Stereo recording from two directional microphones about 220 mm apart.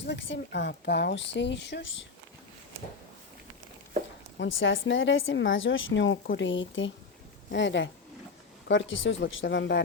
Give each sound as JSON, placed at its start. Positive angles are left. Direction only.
{"t": 0.0, "sound": "speech", "side_deg": 55}
{"t": 4.4, "sound": "a woman's voice", "side_deg": 60}